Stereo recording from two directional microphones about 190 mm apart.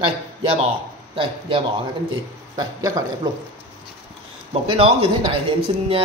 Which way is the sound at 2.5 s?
20° right (ahead or behind).